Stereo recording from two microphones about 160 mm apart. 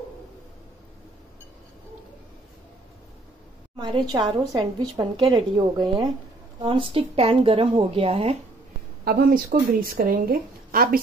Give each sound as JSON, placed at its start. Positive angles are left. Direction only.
{"t": 3.7, "sound": "a woman's voice", "side_deg": -30}
{"t": 9.0, "sound": "speech", "side_deg": -70}